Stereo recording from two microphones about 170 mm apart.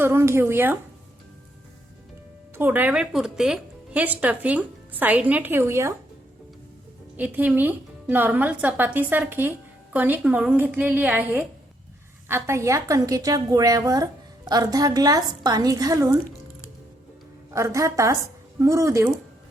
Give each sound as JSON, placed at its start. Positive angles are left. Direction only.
{"t": 0.0, "sound": "speech", "side_deg": -15}
{"t": 2.6, "sound": "speech", "side_deg": -10}
{"t": 7.2, "sound": "a woman's voice", "side_deg": -10}
{"t": 17.5, "sound": "a woman's voice", "side_deg": -20}